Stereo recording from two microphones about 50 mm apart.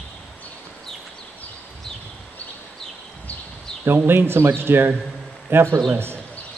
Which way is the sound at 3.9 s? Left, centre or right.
Right.